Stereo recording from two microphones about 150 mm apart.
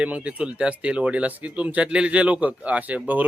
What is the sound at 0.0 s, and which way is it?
Speech, 10° right (ahead or behind).